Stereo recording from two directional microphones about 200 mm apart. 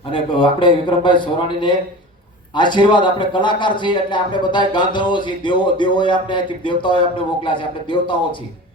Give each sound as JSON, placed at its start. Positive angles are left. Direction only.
{"t": 0.1, "sound": "speech", "side_deg": 25}